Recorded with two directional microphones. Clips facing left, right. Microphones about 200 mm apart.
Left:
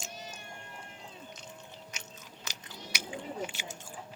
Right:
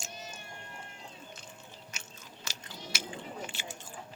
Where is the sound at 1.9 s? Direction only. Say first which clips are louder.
Left 1 dB; 20° left (ahead or behind).